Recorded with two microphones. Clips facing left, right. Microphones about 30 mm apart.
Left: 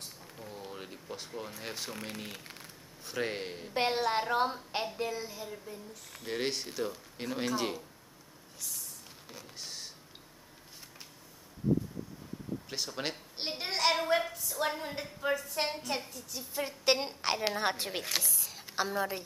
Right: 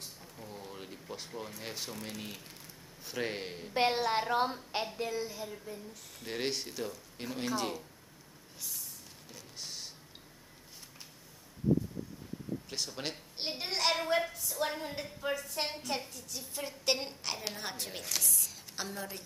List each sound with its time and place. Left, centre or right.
0.4 s a sound: centre
3.1 s a woman's voice: centre
9.6 s power windows: centre
12.6 s a woman's voice: centre
17.2 s a woman's voice: left
18.4 s a sound: left